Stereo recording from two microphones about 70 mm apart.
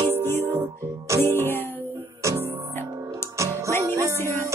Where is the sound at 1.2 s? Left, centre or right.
Left.